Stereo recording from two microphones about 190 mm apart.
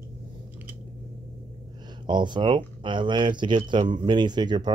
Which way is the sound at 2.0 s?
25° right (ahead or behind).